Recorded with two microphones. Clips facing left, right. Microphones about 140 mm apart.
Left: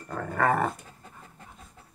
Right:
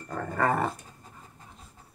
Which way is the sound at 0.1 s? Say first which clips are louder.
Left 1 dB; centre (ahead or behind).